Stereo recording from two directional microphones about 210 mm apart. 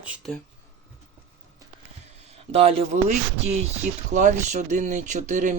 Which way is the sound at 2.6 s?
30° right (ahead or behind).